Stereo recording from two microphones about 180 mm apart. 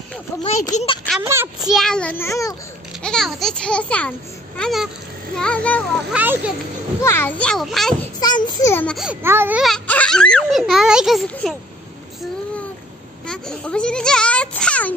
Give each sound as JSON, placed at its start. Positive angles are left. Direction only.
{"t": 0.7, "sound": "speech", "side_deg": 40}
{"t": 1.2, "sound": "speech", "side_deg": -15}
{"t": 1.6, "sound": "speech", "side_deg": 0}
{"t": 3.0, "sound": "speech", "side_deg": 5}
{"t": 6.1, "sound": "speech", "side_deg": -10}
{"t": 7.0, "sound": "a child's voice", "side_deg": 15}
{"t": 8.2, "sound": "a child's voice", "side_deg": 20}
{"t": 8.7, "sound": "speech", "side_deg": 5}
{"t": 9.6, "sound": "speech", "side_deg": 5}
{"t": 13.3, "sound": "a child's voice", "side_deg": 5}